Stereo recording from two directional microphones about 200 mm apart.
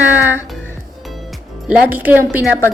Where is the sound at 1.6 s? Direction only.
10° right (ahead or behind).